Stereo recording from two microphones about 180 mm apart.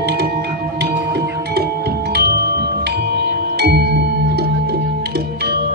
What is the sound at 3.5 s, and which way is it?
Music, 60° right (ahead or behind).